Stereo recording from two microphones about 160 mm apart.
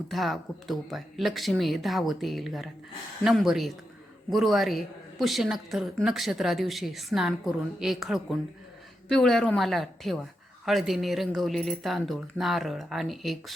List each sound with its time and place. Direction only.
0.1 s a woman's voice: centre (ahead or behind)